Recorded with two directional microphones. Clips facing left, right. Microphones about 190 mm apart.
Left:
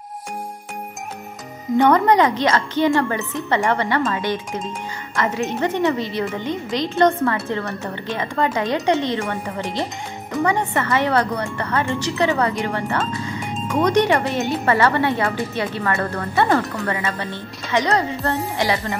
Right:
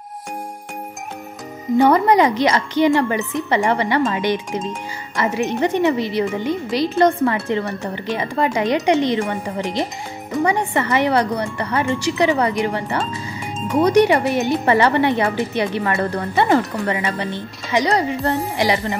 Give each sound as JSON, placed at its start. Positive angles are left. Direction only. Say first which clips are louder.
{"t": 1.8, "sound": "speech", "louder": "right 1 dB", "side_deg": -10}